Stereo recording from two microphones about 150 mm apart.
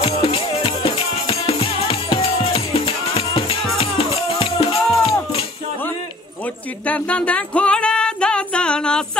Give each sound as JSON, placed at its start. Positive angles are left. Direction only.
{"t": 0.0, "sound": "music", "side_deg": 35}
{"t": 6.9, "sound": "music", "side_deg": 10}